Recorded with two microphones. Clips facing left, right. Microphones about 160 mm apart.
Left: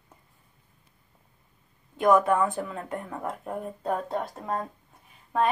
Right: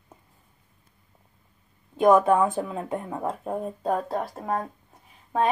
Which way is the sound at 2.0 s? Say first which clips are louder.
Right 3 dB; 25° right (ahead or behind).